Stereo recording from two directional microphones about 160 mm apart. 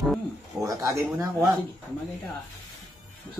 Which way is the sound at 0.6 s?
20° right (ahead or behind).